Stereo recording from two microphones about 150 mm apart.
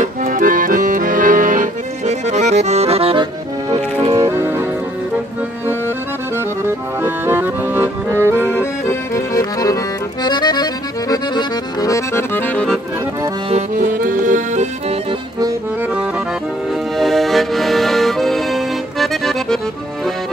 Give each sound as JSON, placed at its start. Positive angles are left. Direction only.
{"t": 0.0, "sound": "accordion", "side_deg": -65}
{"t": 4.1, "sound": "music", "side_deg": -15}
{"t": 6.3, "sound": "accordion", "side_deg": -15}
{"t": 9.1, "sound": "accordion", "side_deg": 20}
{"t": 13.7, "sound": "accordion", "side_deg": -70}
{"t": 15.8, "sound": "accordion", "side_deg": -10}